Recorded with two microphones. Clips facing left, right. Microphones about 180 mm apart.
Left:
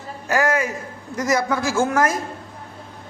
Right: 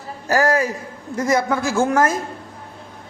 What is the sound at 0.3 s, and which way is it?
A man's voice, 35° right (ahead or behind).